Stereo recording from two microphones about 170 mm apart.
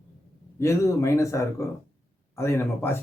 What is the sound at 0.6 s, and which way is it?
A man's voice, 15° left (ahead or behind).